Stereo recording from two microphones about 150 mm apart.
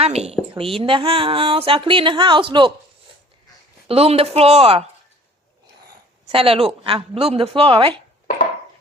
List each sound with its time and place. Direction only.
0.0 s speech: 45° right (ahead or behind)
3.8 s speech: 40° right (ahead or behind)
6.2 s speech: 40° right (ahead or behind)